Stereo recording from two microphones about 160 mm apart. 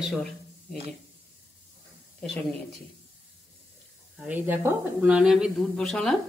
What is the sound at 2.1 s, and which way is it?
Speech, 10° left (ahead or behind).